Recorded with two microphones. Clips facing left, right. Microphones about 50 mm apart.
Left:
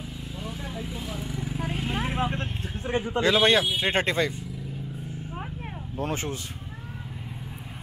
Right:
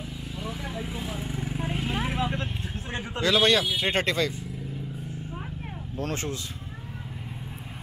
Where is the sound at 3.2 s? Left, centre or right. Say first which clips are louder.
Left 1 dB; left.